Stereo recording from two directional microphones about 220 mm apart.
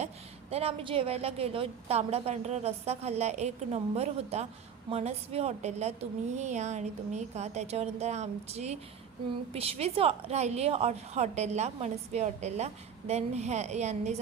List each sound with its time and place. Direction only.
0.5 s a woman's voice: 25° right (ahead or behind)